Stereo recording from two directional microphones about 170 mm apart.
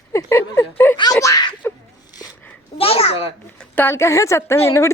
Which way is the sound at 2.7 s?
35° left (ahead or behind).